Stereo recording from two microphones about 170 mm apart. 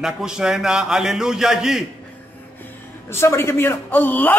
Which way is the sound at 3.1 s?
15° left (ahead or behind).